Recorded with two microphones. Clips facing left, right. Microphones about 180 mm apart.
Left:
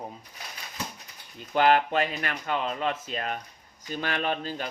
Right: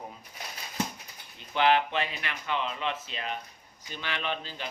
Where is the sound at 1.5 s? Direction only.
45° left (ahead or behind).